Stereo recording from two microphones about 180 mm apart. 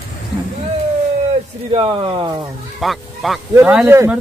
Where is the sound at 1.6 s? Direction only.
30° right (ahead or behind).